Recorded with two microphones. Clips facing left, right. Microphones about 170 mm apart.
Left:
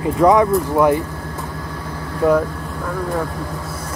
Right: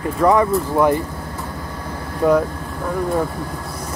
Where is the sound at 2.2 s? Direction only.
5° left (ahead or behind).